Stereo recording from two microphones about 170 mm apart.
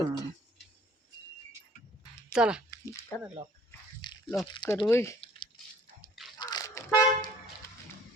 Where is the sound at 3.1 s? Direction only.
15° left (ahead or behind).